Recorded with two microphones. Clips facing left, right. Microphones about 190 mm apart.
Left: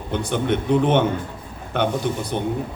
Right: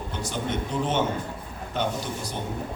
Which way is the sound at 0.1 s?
60° left (ahead or behind).